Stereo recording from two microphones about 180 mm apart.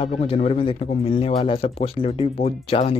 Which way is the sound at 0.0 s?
35° left (ahead or behind).